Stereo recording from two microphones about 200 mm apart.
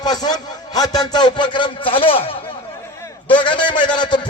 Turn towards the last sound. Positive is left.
turn(degrees=20)  # may be behind; listen again after turning